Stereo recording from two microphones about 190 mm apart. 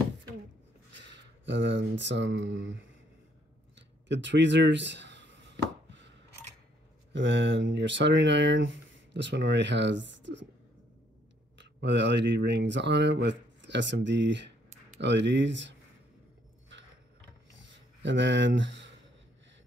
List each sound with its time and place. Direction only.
0.9 s speech: 70° right (ahead or behind)
4.1 s a sound: 70° right (ahead or behind)
7.1 s speech: 70° right (ahead or behind)
11.5 s speech: 65° right (ahead or behind)
18.0 s speech: 70° right (ahead or behind)